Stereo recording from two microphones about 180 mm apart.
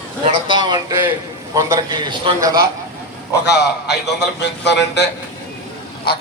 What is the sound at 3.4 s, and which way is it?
Speech, 65° left (ahead or behind).